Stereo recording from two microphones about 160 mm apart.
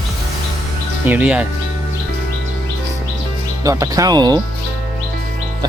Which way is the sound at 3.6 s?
20° right (ahead or behind).